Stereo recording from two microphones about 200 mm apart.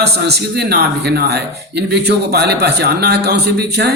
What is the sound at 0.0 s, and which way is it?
Speech, 55° right (ahead or behind).